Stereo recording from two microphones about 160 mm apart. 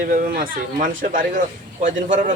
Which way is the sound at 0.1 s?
60° right (ahead or behind).